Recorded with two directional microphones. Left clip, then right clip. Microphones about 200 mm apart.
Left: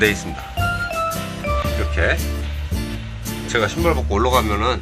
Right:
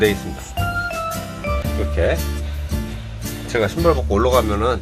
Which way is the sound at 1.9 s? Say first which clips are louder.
Right 1 dB; 25° right (ahead or behind).